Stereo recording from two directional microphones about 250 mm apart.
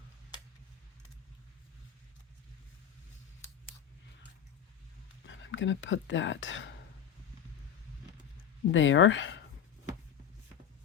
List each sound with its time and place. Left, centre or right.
5.2 s speech: left
8.7 s speech: left